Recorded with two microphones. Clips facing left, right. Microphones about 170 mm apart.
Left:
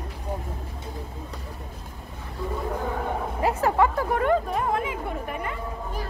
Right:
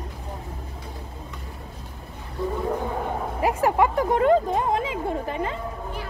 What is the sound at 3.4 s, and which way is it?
Speech, 15° right (ahead or behind).